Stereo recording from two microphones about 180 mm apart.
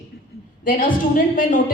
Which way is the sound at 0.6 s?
50° left (ahead or behind).